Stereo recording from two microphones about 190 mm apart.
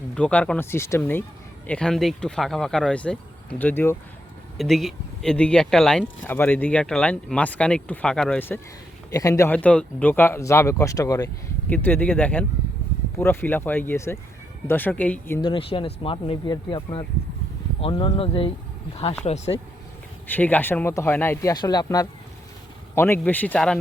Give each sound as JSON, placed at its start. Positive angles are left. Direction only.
{"t": 0.1, "sound": "speech", "side_deg": 5}
{"t": 15.4, "sound": "speech", "side_deg": 25}
{"t": 20.2, "sound": "speech", "side_deg": 10}